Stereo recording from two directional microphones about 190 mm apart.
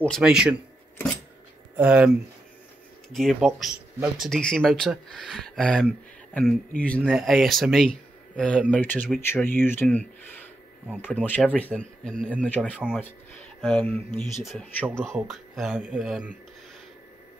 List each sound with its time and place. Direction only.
0.0 s speech: centre (ahead or behind)
1.8 s speech: 5° right (ahead or behind)
3.2 s speech: centre (ahead or behind)